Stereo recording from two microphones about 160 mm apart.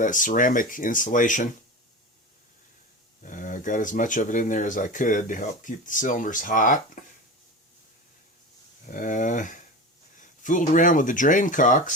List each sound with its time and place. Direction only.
0.0 s speech: 55° left (ahead or behind)
3.2 s speech: 55° left (ahead or behind)
8.9 s speech: 55° left (ahead or behind)